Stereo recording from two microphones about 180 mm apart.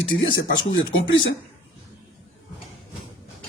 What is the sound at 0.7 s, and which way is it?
Speech, 90° left.